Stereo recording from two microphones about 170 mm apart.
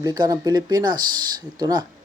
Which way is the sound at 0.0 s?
20° right (ahead or behind).